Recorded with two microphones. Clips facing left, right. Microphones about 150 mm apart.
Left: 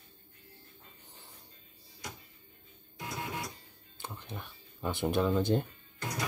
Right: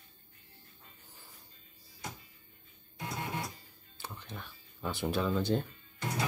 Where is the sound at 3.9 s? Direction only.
20° left (ahead or behind).